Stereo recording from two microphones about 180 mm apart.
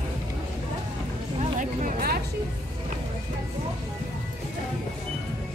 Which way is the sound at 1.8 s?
50° right (ahead or behind).